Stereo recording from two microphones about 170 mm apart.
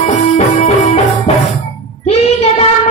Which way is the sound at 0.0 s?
45° left (ahead or behind).